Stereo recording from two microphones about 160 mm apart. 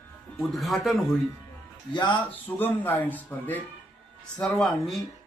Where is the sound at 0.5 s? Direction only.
Centre (ahead or behind).